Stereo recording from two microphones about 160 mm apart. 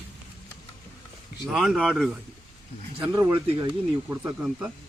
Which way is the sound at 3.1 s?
15° right (ahead or behind).